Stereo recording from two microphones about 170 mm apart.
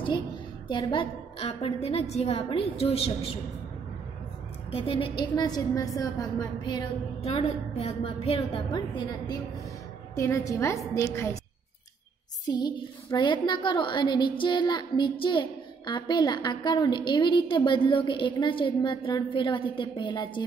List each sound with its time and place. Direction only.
0.7 s a woman's voice: 30° left (ahead or behind)
4.6 s a woman's voice: 35° left (ahead or behind)
7.2 s a woman's voice: 35° left (ahead or behind)
8.7 s a woman's voice: 25° left (ahead or behind)
12.4 s a woman's voice: 25° left (ahead or behind)